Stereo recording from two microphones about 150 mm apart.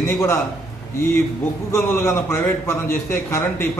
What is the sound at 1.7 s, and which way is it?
A man's voice, 15° left (ahead or behind).